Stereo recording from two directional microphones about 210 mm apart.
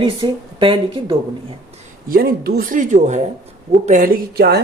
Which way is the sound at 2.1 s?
45° right (ahead or behind).